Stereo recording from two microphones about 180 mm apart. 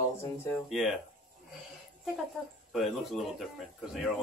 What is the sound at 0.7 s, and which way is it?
Speech, centre (ahead or behind).